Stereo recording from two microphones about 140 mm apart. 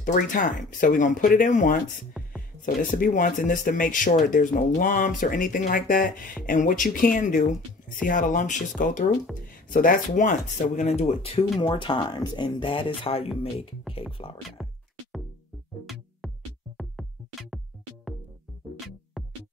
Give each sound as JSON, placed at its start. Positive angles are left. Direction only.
{"t": 0.0, "sound": "speech", "side_deg": 70}
{"t": 11.0, "sound": "speech", "side_deg": 45}
{"t": 11.6, "sound": "speech", "side_deg": 35}
{"t": 14.6, "sound": "music", "side_deg": 0}
{"t": 16.2, "sound": "music", "side_deg": 0}